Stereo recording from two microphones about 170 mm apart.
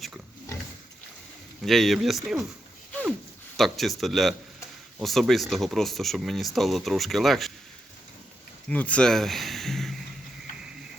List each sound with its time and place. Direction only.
1.6 s speech: centre (ahead or behind)
3.6 s speech: centre (ahead or behind)
8.7 s speech: 10° left (ahead or behind)